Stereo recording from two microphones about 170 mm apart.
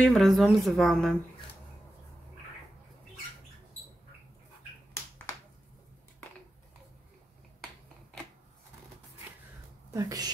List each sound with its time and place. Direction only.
0.0 s a woman's voice: centre (ahead or behind)
9.8 s a woman's voice: 20° right (ahead or behind)